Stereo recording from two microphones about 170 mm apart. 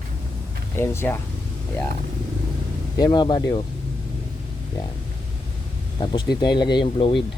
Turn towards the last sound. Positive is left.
turn(degrees=30)  # may be behind; listen again after turning